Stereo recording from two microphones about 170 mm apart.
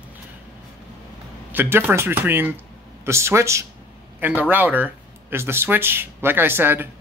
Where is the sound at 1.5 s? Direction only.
10° right (ahead or behind).